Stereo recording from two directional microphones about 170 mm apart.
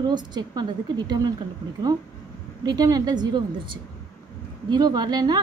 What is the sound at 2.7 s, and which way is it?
Speech, 20° right (ahead or behind).